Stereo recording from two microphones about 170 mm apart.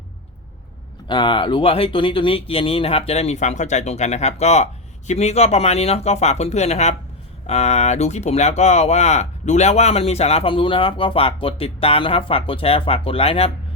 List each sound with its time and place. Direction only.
1.0 s speech: 30° left (ahead or behind)